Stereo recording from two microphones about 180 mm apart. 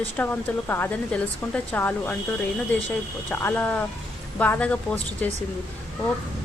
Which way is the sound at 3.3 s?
10° left (ahead or behind).